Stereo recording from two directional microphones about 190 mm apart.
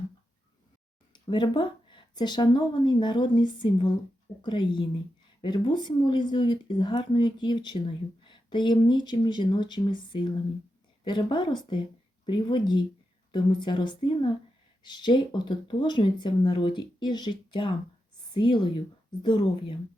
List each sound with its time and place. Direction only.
1.1 s speech: 25° left (ahead or behind)